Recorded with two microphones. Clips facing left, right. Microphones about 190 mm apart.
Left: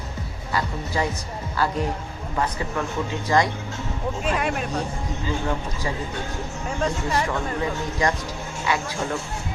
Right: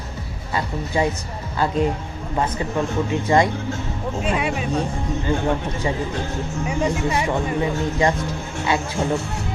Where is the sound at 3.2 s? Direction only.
25° right (ahead or behind).